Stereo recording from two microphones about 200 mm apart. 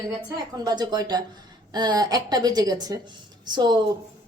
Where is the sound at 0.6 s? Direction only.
20° right (ahead or behind).